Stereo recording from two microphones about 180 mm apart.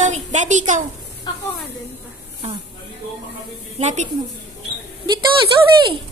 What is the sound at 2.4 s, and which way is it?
Speech, 35° right (ahead or behind).